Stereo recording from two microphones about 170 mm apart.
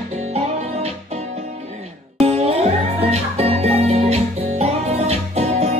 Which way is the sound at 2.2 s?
35° right (ahead or behind).